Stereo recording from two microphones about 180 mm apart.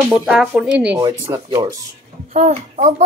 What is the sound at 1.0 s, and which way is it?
Speech, 25° right (ahead or behind).